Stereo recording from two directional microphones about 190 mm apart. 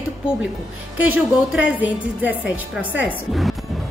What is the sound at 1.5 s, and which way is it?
A woman's voice, 10° right (ahead or behind).